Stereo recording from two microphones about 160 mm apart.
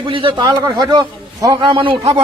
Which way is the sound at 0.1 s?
30° right (ahead or behind).